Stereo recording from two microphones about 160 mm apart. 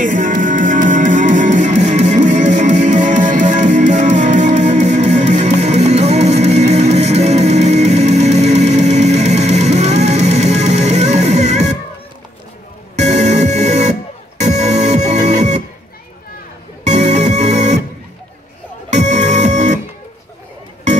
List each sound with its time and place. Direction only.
0.0 s music: 55° right (ahead or behind)
12.9 s music: 45° right (ahead or behind)
16.8 s music: 45° right (ahead or behind)
18.9 s music: 45° right (ahead or behind)